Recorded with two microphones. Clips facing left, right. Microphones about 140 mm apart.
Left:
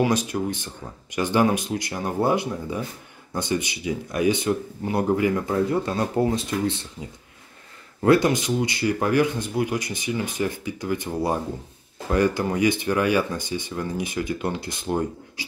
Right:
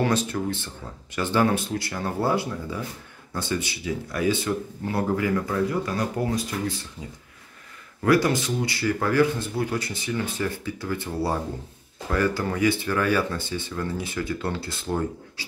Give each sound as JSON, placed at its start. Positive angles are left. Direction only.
{"t": 0.0, "sound": "speech", "side_deg": 15}
{"t": 8.0, "sound": "speech", "side_deg": 25}